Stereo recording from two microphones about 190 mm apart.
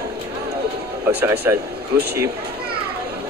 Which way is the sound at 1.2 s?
15° right (ahead or behind).